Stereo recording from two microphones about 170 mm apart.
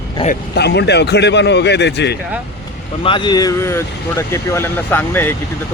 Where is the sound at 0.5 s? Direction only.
80° left.